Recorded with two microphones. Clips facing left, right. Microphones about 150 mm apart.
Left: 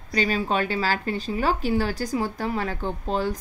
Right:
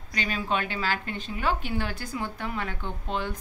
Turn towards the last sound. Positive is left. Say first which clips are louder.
# left 6 dB
turn(degrees=40)  # may be behind; listen again after turning